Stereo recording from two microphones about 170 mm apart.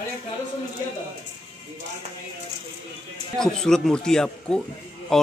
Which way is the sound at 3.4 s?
5° left (ahead or behind).